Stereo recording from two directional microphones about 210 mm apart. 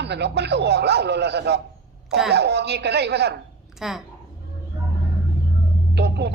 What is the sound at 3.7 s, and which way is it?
Speech, centre (ahead or behind).